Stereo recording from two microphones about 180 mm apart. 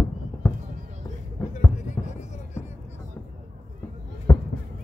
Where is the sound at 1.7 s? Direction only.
40° left (ahead or behind).